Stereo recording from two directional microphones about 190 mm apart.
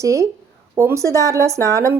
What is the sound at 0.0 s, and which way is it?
A woman's voice, 15° right (ahead or behind).